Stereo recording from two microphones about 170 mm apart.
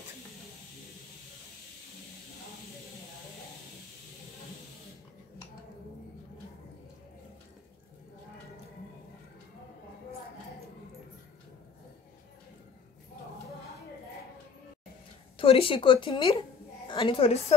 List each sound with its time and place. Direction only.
15.3 s a woman's voice: 30° left (ahead or behind)